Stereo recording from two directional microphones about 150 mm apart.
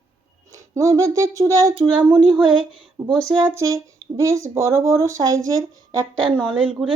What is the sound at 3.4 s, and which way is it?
Speech, 20° right (ahead or behind).